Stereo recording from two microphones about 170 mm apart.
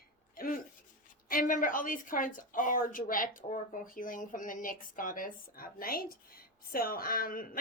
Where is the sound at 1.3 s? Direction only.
55° left (ahead or behind).